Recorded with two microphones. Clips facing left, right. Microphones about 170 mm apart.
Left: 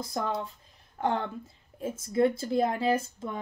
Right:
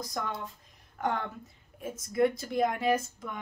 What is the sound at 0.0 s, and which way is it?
A woman's voice, 30° left (ahead or behind).